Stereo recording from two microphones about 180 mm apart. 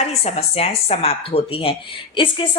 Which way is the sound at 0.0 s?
35° left (ahead or behind).